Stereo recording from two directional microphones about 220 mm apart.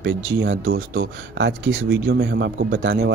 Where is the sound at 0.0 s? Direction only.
55° right (ahead or behind).